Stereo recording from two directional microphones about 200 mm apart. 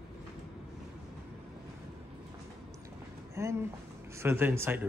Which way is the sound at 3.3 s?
15° right (ahead or behind).